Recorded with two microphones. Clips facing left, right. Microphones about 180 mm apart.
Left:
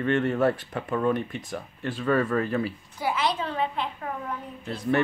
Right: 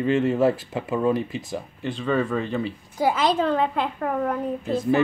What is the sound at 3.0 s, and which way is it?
Speech, 90° right.